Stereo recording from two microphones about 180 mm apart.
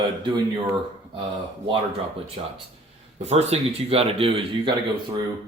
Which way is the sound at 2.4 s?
35° right (ahead or behind).